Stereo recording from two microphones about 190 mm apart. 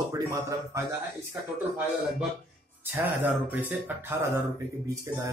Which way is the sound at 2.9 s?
10° right (ahead or behind).